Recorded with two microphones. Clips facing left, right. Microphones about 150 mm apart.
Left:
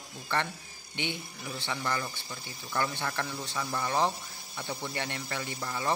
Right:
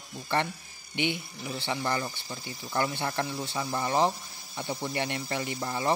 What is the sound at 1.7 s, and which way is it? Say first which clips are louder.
Speech: right 3 dB; 30° right (ahead or behind).